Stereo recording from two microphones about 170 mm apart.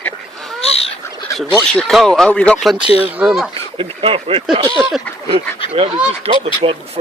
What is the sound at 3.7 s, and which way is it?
Speech, 35° right (ahead or behind).